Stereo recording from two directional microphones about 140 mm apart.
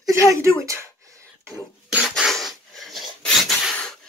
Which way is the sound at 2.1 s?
Centre (ahead or behind).